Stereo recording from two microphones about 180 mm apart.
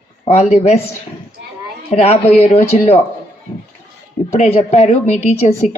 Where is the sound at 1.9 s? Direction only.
35° left (ahead or behind).